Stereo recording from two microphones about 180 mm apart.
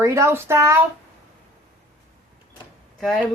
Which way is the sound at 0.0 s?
15° right (ahead or behind).